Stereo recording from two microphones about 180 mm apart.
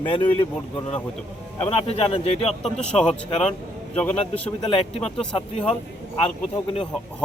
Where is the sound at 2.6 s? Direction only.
5° left (ahead or behind).